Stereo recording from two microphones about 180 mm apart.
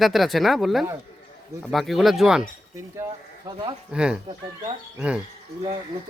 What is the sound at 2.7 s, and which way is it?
Speech, 15° right (ahead or behind).